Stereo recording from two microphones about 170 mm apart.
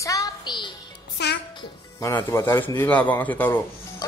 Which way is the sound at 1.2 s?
85° left.